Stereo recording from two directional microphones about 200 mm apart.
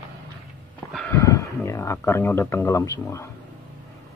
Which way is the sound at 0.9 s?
5° left (ahead or behind).